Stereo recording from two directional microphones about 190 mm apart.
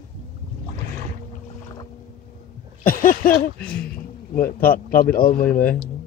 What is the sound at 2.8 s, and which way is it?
Speech, 50° left (ahead or behind).